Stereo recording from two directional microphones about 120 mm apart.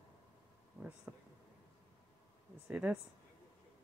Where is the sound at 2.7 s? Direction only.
10° right (ahead or behind).